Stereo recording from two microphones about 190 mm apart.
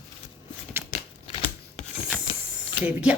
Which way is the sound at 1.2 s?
30° left (ahead or behind).